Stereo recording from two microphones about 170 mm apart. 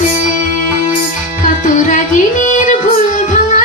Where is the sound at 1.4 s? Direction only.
45° left (ahead or behind).